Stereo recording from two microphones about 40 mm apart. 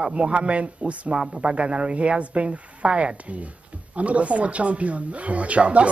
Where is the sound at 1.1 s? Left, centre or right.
Right.